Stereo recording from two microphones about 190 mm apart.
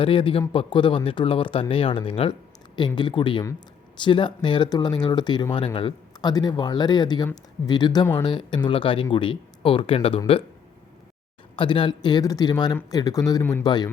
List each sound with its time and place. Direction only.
0.0 s speech: 30° left (ahead or behind)
11.5 s speech: 25° left (ahead or behind)